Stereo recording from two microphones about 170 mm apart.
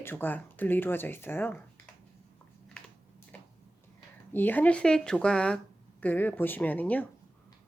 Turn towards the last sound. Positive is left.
turn(degrees=10)  # may be behind; listen again after turning